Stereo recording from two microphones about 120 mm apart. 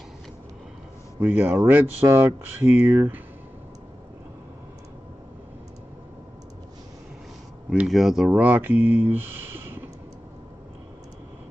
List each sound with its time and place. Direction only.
1.2 s speech: 15° right (ahead or behind)
7.8 s speech: centre (ahead or behind)
8.8 s a sound: 15° right (ahead or behind)